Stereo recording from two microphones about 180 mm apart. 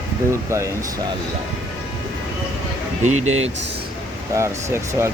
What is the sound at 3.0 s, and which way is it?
Speech, 40° right (ahead or behind).